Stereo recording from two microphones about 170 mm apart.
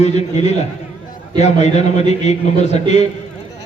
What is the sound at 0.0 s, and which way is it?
A man's voice, 40° left (ahead or behind).